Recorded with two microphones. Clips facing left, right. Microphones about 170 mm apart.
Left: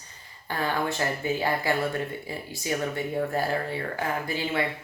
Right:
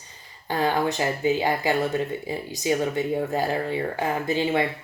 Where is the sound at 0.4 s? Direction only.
20° right (ahead or behind).